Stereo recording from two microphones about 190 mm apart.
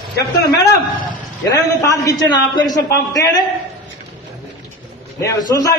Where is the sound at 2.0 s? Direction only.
20° left (ahead or behind).